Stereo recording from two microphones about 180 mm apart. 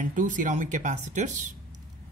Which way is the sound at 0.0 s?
45° right (ahead or behind).